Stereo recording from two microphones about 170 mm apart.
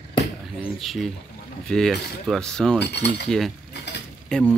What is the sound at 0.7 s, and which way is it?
Speech, centre (ahead or behind).